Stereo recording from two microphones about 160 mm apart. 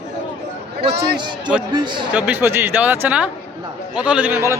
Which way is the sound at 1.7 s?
30° right (ahead or behind).